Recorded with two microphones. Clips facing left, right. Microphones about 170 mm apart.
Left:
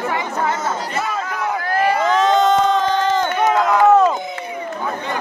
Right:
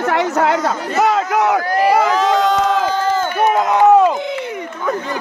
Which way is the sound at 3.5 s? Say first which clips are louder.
Right 2 dB; 20° right (ahead or behind).